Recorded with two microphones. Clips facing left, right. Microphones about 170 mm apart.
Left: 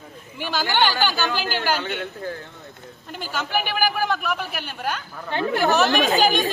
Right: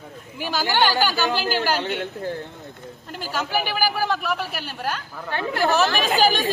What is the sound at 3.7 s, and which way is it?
Speech, 5° right (ahead or behind).